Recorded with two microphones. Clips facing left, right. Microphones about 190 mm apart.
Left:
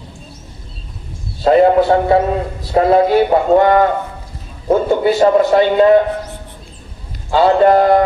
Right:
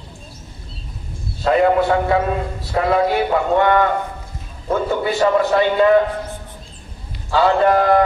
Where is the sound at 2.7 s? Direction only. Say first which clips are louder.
Left 6 dB; 30° left (ahead or behind).